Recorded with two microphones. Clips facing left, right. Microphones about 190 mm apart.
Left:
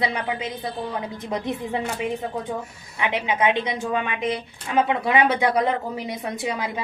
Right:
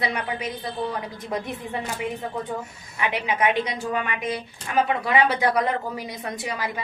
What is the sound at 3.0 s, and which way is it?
A woman's voice, 20° left (ahead or behind).